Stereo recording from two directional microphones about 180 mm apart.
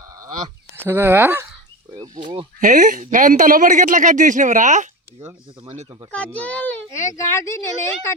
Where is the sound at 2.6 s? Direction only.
50° right (ahead or behind).